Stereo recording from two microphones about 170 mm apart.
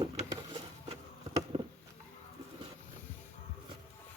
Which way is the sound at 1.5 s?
30° right (ahead or behind).